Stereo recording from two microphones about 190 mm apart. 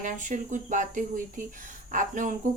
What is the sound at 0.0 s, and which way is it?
A woman's voice, 40° right (ahead or behind).